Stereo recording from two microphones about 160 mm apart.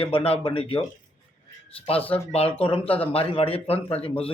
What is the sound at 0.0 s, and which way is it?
Speech, 35° left (ahead or behind).